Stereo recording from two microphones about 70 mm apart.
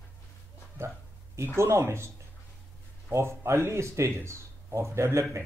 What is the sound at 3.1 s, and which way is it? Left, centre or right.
Speech, right.